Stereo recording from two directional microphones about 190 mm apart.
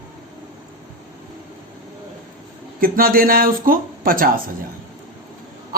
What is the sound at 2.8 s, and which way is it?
A man's voice, 50° right (ahead or behind).